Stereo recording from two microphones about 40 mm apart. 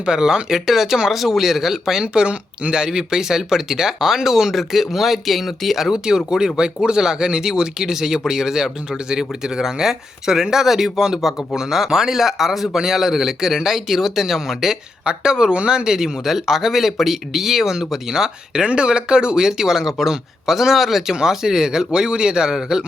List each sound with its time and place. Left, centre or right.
0.0 s speech: centre
5.9 s speech: centre